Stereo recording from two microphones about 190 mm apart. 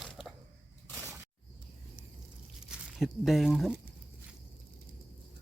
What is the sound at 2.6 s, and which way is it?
Speech, centre (ahead or behind).